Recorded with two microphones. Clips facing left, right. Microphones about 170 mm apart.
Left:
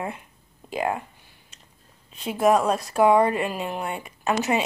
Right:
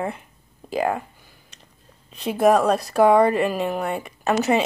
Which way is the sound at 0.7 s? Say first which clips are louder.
Right 3 dB; 35° right (ahead or behind).